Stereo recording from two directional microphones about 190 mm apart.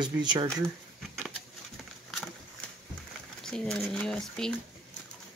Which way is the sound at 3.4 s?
5° left (ahead or behind).